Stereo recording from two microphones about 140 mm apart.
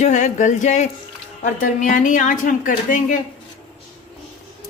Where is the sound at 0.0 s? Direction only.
60° left (ahead or behind).